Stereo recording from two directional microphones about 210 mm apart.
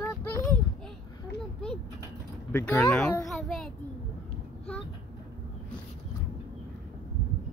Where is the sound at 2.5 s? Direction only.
10° left (ahead or behind).